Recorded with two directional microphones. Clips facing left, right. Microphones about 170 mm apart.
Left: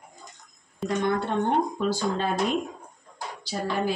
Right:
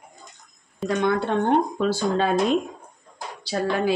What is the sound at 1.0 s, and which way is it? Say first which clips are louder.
Speech: right 4 dB; 85° right.